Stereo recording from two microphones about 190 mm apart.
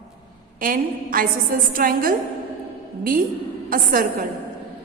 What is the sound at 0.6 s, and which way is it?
A woman's voice, 50° right (ahead or behind).